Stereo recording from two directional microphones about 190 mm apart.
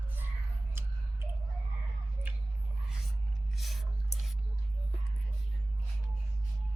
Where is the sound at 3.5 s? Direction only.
Centre (ahead or behind).